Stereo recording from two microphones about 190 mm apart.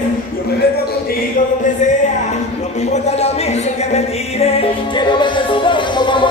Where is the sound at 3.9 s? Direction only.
35° left (ahead or behind).